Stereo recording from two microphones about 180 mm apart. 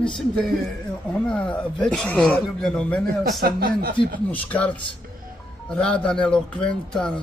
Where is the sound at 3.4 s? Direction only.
55° right (ahead or behind).